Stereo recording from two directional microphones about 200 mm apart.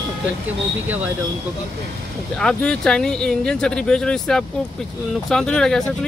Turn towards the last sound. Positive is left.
turn(degrees=5)  # may be behind; listen again after turning